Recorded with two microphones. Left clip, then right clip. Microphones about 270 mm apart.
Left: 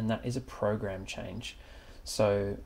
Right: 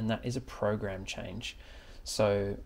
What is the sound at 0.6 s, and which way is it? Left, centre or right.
Speech, right.